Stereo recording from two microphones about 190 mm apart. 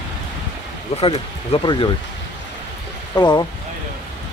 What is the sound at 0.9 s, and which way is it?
Speech, 35° left (ahead or behind).